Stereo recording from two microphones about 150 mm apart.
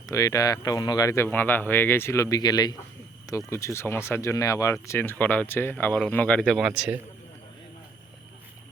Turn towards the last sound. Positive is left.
turn(degrees=-5)  # may be behind; listen again after turning